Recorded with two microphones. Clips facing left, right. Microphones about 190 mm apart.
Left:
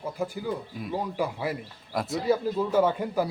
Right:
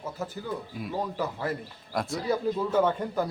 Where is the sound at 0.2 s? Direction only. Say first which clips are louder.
Left 5 dB; 10° left (ahead or behind).